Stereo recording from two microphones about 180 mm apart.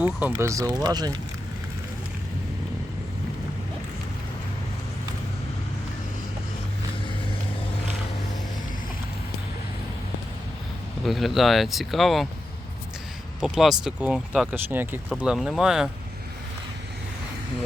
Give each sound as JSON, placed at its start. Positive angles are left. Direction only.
{"t": 0.0, "sound": "speech", "side_deg": -10}
{"t": 11.0, "sound": "speech", "side_deg": 0}
{"t": 13.4, "sound": "speech", "side_deg": 0}